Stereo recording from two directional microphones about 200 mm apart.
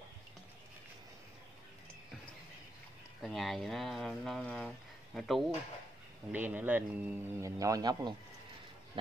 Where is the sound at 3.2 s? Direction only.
Centre (ahead or behind).